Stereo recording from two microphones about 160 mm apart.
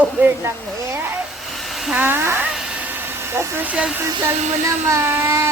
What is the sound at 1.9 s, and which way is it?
Child singing, 10° right (ahead or behind).